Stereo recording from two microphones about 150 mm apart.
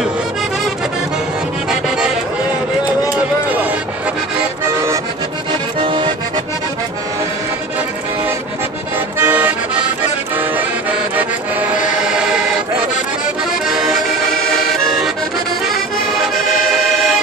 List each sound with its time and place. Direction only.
1.7 s music: 5° right (ahead or behind)
5.5 s accordion: 35° right (ahead or behind)
9.2 s music: 10° right (ahead or behind)
10.3 s accordion: 10° right (ahead or behind)
12.0 s music: 5° right (ahead or behind)
13.7 s accordion: 5° right (ahead or behind)